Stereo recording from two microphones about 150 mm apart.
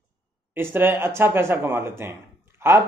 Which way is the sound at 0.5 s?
15° right (ahead or behind).